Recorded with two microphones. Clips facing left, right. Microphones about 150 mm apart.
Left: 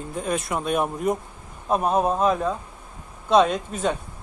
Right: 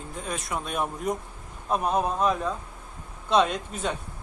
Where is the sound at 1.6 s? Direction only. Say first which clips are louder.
Left 4 dB; 40° left (ahead or behind).